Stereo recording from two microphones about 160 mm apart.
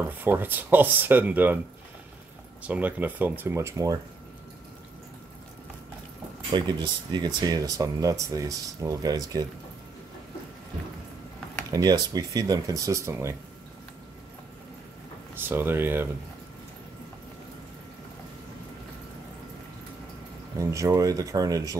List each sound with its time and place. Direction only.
0.2 s speech: 10° right (ahead or behind)
2.6 s speech: 10° right (ahead or behind)
6.5 s speech: 30° right (ahead or behind)
11.7 s speech: 25° right (ahead or behind)
15.3 s speech: 15° right (ahead or behind)
20.5 s speech: 20° right (ahead or behind)